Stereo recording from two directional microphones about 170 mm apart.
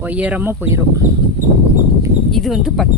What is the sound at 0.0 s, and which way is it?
Speech, 10° right (ahead or behind).